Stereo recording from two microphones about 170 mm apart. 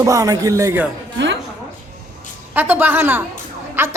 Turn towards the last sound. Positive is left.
turn(degrees=-15)  # may be behind; listen again after turning